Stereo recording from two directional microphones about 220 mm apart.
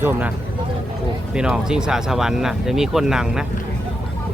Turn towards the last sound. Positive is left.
turn(degrees=-5)  # may be behind; listen again after turning